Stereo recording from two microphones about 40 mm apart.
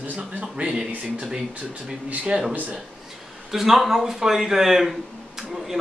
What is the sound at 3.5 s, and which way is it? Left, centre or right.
Speech, centre.